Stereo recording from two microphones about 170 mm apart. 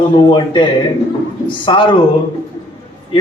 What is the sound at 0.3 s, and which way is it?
A man's voice, 30° left (ahead or behind).